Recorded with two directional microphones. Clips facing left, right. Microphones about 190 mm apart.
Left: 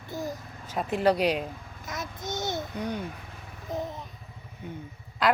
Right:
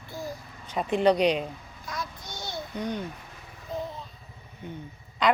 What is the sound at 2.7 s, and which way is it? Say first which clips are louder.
Babbling: right 1 dB; 10° left (ahead or behind).